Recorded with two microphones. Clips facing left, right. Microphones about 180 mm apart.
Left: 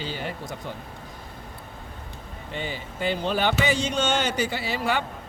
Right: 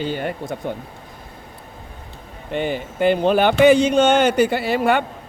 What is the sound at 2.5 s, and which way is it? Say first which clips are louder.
Speech: right 10 dB; 55° right (ahead or behind).